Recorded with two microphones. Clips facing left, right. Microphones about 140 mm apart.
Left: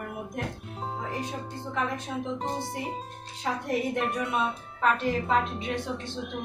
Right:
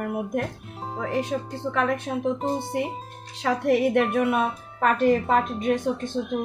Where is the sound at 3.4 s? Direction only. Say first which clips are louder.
Right 8 dB; 80° right.